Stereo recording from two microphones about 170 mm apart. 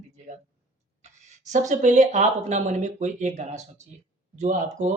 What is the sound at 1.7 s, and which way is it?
Speech, 45° right (ahead or behind).